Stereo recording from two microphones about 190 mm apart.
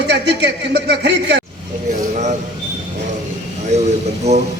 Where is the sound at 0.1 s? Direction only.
65° right (ahead or behind).